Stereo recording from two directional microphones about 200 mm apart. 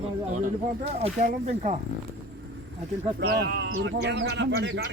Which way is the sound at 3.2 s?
55° right (ahead or behind).